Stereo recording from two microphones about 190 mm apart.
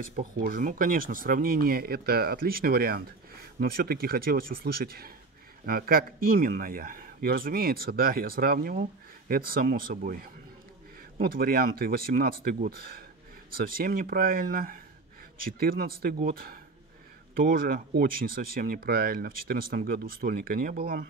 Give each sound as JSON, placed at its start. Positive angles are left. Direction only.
{"t": 0.1, "sound": "speech", "side_deg": -40}